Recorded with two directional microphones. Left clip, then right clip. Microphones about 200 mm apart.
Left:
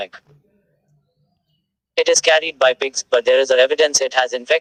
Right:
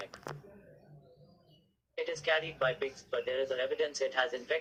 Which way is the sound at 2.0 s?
50° left (ahead or behind).